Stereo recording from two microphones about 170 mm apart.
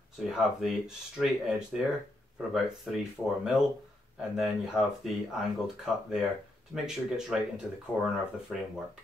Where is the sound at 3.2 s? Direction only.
15° left (ahead or behind).